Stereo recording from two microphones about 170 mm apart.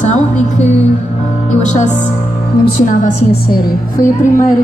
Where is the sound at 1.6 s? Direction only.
45° left (ahead or behind).